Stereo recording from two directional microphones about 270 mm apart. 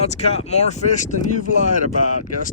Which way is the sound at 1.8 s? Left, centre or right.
Left.